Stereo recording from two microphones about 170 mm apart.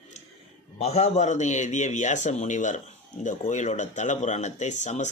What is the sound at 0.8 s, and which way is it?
A man's voice, 35° left (ahead or behind).